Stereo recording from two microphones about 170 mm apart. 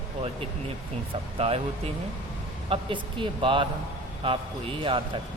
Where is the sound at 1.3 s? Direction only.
35° right (ahead or behind).